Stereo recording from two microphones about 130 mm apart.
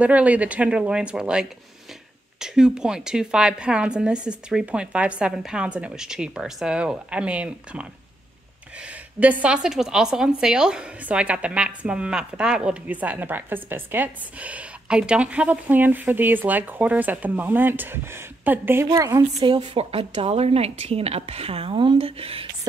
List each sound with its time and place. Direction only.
0.0 s a woman's voice: 10° right (ahead or behind)
9.2 s a woman's voice: 10° right (ahead or behind)
18.9 s a woman's voice: 25° right (ahead or behind)
19.4 s a woman's voice: 40° right (ahead or behind)